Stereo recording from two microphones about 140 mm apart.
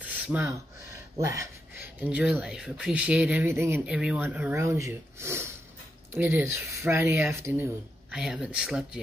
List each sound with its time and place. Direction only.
0.0 s a sound: 10° right (ahead or behind)
2.0 s speech: 10° right (ahead or behind)
3.8 s speech: 5° right (ahead or behind)
8.1 s speech: 5° right (ahead or behind)